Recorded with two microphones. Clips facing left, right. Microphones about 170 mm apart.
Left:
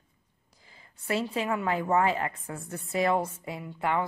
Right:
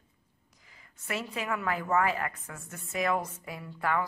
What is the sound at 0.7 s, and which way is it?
A woman's voice, 30° left (ahead or behind).